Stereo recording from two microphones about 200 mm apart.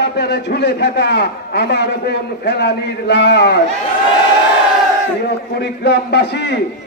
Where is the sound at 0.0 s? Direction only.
55° left (ahead or behind).